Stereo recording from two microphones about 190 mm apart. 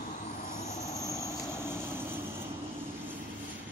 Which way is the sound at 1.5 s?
10° right (ahead or behind).